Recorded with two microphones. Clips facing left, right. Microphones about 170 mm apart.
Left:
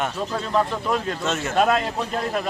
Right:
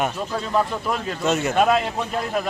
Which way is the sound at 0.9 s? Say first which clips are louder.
Right 1 dB; 15° right (ahead or behind).